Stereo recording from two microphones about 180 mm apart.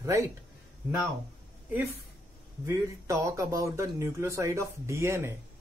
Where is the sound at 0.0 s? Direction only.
15° right (ahead or behind).